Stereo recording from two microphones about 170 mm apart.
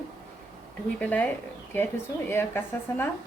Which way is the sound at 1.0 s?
10° left (ahead or behind).